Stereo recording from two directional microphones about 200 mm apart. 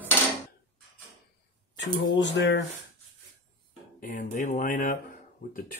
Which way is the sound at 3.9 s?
40° left (ahead or behind).